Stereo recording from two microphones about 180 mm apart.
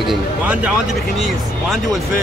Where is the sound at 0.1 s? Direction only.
10° right (ahead or behind).